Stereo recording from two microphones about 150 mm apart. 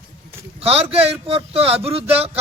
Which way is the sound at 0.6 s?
40° right (ahead or behind).